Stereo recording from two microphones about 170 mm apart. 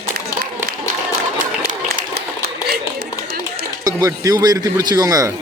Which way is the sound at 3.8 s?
20° right (ahead or behind).